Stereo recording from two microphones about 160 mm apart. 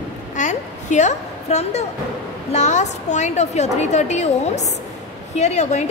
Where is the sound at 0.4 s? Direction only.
50° left (ahead or behind).